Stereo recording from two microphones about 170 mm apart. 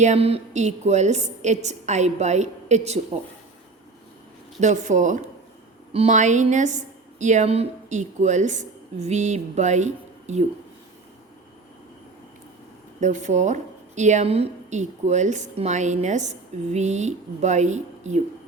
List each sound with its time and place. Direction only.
0.0 s a woman's voice: 40° right (ahead or behind)
4.6 s a woman's voice: 45° right (ahead or behind)
13.0 s a woman's voice: 45° right (ahead or behind)